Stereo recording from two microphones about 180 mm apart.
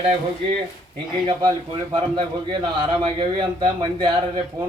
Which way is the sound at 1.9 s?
25° right (ahead or behind).